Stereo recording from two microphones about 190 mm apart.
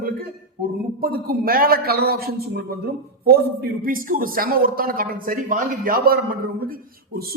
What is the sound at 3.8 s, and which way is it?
Speech, 50° right (ahead or behind).